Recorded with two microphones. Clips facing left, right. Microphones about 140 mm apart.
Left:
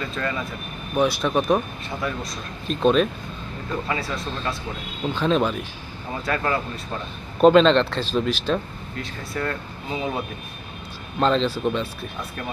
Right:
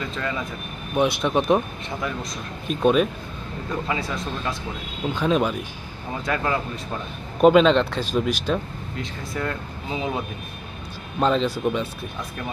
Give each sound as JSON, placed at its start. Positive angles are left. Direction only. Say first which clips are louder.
{"t": 0.0, "sound": "speech", "louder": "left 1 dB", "side_deg": -15}